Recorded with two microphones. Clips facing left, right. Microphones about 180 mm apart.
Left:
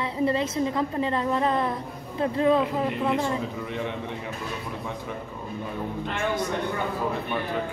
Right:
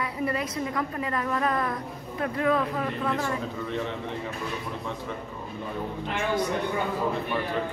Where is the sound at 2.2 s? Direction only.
25° left (ahead or behind).